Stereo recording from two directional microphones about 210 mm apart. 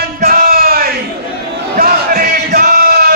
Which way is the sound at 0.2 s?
45° right (ahead or behind).